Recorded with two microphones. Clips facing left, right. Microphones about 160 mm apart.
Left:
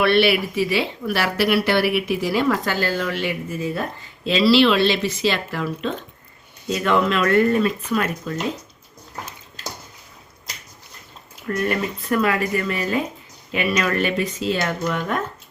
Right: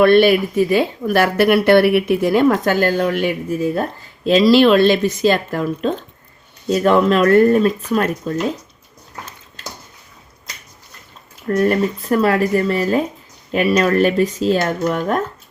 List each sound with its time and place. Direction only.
0.0 s a woman's voice: 45° right (ahead or behind)
11.4 s speech: 40° right (ahead or behind)